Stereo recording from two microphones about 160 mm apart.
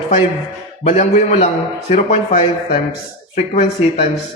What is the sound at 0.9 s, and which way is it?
A man's voice, 45° left (ahead or behind).